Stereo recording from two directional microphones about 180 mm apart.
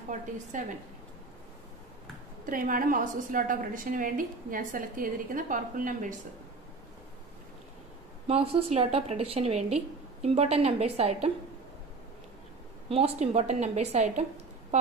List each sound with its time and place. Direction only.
0.5 s a woman's voice: 45° right (ahead or behind)
2.4 s a woman's voice: 50° right (ahead or behind)
8.3 s a woman's voice: 30° right (ahead or behind)
12.9 s a woman's voice: 35° right (ahead or behind)